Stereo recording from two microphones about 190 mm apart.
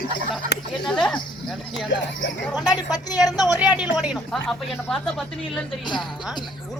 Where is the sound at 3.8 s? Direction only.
5° right (ahead or behind).